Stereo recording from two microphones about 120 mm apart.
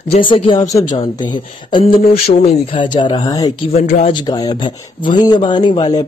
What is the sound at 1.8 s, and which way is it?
Mantra, 60° left (ahead or behind).